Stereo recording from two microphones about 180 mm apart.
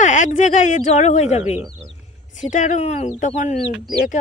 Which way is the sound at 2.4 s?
45° left (ahead or behind).